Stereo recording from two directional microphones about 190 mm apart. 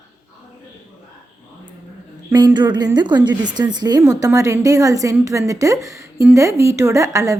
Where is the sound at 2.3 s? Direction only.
20° right (ahead or behind).